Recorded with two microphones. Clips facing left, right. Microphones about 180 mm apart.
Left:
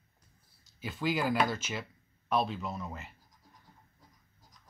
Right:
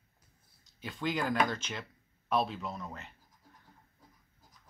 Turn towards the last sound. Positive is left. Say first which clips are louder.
# left 2 dB
turn(degrees=5)  # may be behind; listen again after turning